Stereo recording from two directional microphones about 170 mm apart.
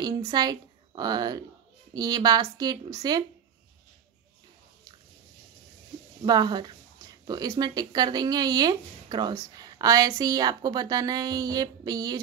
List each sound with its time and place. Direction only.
0.0 s a woman's voice: 25° right (ahead or behind)
6.2 s speech: 25° right (ahead or behind)